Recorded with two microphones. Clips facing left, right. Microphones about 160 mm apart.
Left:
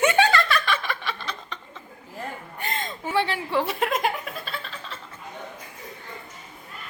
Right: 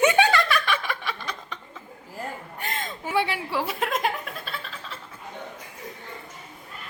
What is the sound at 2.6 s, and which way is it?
A woman's voice, centre (ahead or behind).